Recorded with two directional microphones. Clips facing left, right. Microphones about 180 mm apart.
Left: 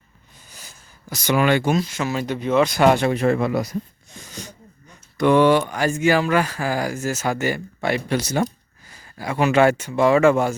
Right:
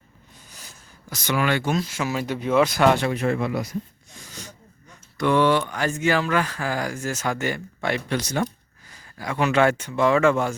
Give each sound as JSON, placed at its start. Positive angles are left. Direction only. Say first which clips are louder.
{"t": 0.4, "sound": "a sound", "louder": "left 2 dB", "side_deg": 0}
{"t": 1.1, "sound": "speech", "louder": "left 5 dB", "side_deg": 15}
{"t": 1.7, "sound": "speech", "louder": "left 3 dB", "side_deg": -5}
{"t": 2.8, "sound": "speech", "louder": "left 5 dB", "side_deg": 15}
{"t": 3.1, "sound": "a man's voice", "louder": "left 4 dB", "side_deg": 35}
{"t": 4.1, "sound": "a sound", "louder": "left 4 dB", "side_deg": 20}
{"t": 5.1, "sound": "speech", "louder": "left 4 dB", "side_deg": 15}